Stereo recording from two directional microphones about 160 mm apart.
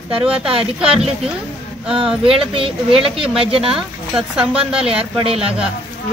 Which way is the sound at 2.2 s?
35° right (ahead or behind).